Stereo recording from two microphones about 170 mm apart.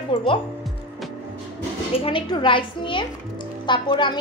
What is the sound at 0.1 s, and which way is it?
Music, 30° left (ahead or behind).